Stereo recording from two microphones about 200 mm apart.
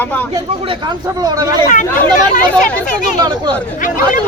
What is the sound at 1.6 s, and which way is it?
Speech, 40° left (ahead or behind).